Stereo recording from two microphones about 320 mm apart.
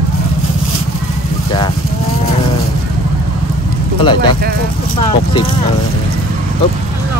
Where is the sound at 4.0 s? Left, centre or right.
Centre.